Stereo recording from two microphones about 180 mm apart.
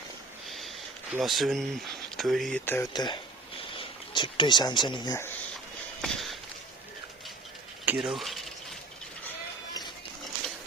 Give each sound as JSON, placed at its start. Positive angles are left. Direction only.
{"t": 1.1, "sound": "speech", "side_deg": 0}
{"t": 2.6, "sound": "speech", "side_deg": 10}
{"t": 2.9, "sound": "speech", "side_deg": 25}
{"t": 6.0, "sound": "a sound", "side_deg": 0}
{"t": 7.9, "sound": "mechanisms", "side_deg": -5}